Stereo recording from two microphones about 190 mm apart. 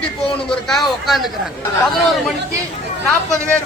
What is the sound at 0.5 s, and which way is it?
Speech, centre (ahead or behind).